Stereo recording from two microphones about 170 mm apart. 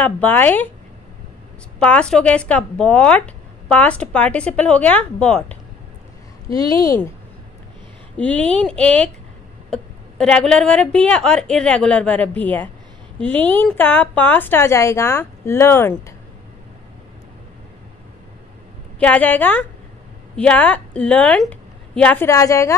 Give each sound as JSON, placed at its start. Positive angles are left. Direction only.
{"t": 0.0, "sound": "speech", "side_deg": 10}
{"t": 1.8, "sound": "speech", "side_deg": 5}
{"t": 6.5, "sound": "speech", "side_deg": 20}
{"t": 8.2, "sound": "a woman's voice", "side_deg": 10}
{"t": 18.9, "sound": "speech", "side_deg": 5}